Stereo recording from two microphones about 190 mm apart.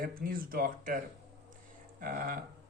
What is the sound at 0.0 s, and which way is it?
Speech, 50° right (ahead or behind).